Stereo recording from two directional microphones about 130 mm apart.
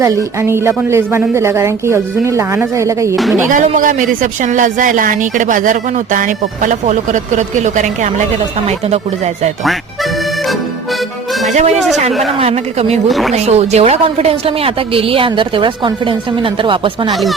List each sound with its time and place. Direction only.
0.0 s a woman's voice: 25° right (ahead or behind)
3.5 s speech: 90° right; by 8.1 s 70° right (ahead or behind)
8.6 s speech: 55° right (ahead or behind)
11.4 s speech: 65° right (ahead or behind)
12.4 s a woman's voice: 50° right (ahead or behind)
13.1 s speech: centre (ahead or behind)
13.3 s a woman's voice: 55° right (ahead or behind)
17.1 s speech: centre (ahead or behind)